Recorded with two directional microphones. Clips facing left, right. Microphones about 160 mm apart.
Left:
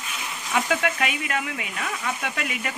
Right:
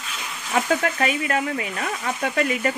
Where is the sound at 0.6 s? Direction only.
40° right (ahead or behind).